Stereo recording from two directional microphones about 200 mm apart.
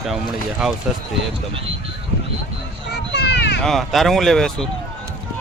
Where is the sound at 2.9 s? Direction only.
60° left (ahead or behind).